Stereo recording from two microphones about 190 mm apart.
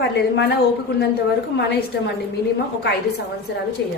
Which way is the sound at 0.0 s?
60° left (ahead or behind).